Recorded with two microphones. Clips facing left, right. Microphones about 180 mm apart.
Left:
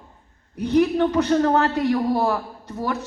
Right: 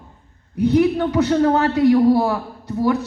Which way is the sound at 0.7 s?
10° right (ahead or behind).